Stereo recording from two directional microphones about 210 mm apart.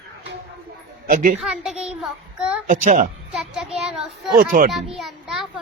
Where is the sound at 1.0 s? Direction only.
40° right (ahead or behind).